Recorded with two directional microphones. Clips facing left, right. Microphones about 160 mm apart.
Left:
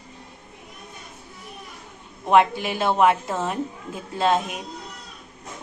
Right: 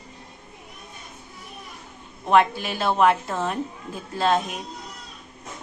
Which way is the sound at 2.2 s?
15° left (ahead or behind).